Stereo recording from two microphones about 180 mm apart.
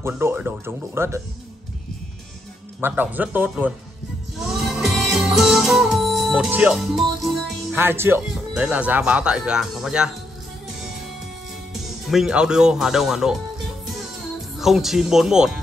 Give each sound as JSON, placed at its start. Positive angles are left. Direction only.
{"t": 0.0, "sound": "speech", "side_deg": -15}
{"t": 2.8, "sound": "speech", "side_deg": -10}
{"t": 4.4, "sound": "music", "side_deg": 0}
{"t": 7.7, "sound": "speech", "side_deg": -15}
{"t": 11.7, "sound": "speech", "side_deg": 0}
{"t": 14.6, "sound": "speech", "side_deg": 0}